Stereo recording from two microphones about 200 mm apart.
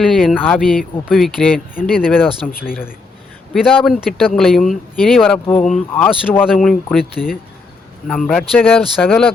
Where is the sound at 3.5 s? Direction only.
Centre (ahead or behind).